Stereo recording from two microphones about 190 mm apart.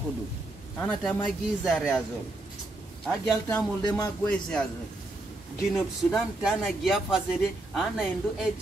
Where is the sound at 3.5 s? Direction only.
20° left (ahead or behind).